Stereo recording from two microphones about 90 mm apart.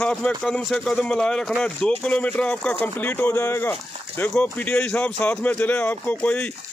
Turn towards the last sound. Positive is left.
turn(degrees=15)  # may be behind; listen again after turning